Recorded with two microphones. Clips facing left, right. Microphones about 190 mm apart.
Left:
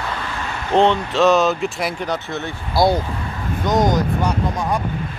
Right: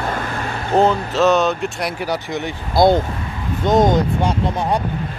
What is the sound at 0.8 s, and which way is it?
Speech, centre (ahead or behind).